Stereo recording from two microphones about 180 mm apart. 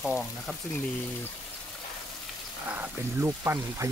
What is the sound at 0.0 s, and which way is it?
Speech, centre (ahead or behind).